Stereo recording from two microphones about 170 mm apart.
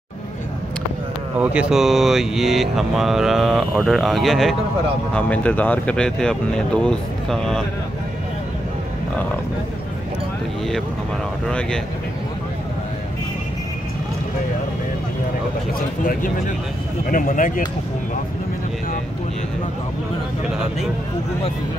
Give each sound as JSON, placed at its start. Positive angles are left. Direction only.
{"t": 1.4, "sound": "speech", "side_deg": -5}
{"t": 11.4, "sound": "speech", "side_deg": 5}
{"t": 17.1, "sound": "speech", "side_deg": 55}